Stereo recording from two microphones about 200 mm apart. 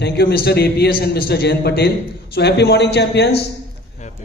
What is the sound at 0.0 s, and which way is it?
A man's voice, 50° left (ahead or behind).